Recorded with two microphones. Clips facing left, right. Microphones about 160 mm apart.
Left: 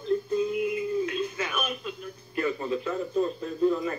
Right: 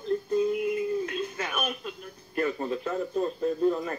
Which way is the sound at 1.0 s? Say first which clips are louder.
Left 2 dB; 50° right (ahead or behind).